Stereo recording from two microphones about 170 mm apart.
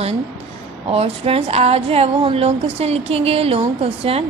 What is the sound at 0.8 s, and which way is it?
A woman's voice, 35° right (ahead or behind).